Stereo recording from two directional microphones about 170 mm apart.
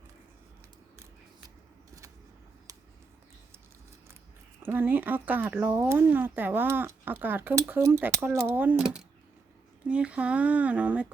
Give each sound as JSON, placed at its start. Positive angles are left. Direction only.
{"t": 4.6, "sound": "speech", "side_deg": -10}